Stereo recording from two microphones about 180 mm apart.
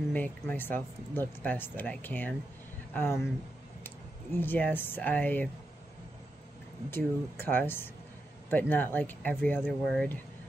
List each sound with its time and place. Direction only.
0.1 s speech: 10° left (ahead or behind)
6.9 s speech: 10° left (ahead or behind)